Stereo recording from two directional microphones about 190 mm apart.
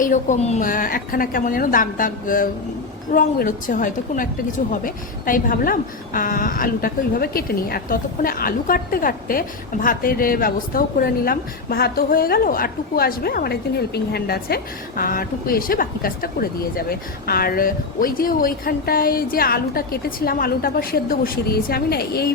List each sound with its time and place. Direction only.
0.0 s speech: 40° left (ahead or behind)